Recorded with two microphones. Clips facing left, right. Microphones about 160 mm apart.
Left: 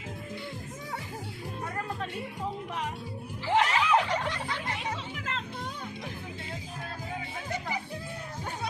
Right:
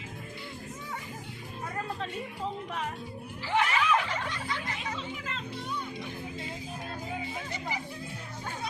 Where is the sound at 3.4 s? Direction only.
30° left (ahead or behind).